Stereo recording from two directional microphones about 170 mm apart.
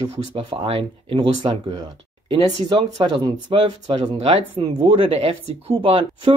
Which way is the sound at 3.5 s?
30° right (ahead or behind).